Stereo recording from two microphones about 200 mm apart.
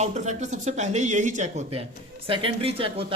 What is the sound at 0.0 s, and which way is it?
Speech, 35° right (ahead or behind).